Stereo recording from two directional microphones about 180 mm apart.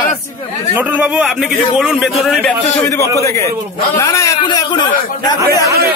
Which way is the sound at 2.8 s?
15° left (ahead or behind).